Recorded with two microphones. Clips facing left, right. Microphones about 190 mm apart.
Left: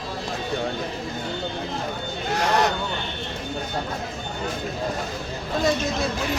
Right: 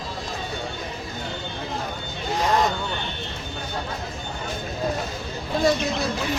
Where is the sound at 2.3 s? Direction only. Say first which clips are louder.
Even; 75° left (ahead or behind).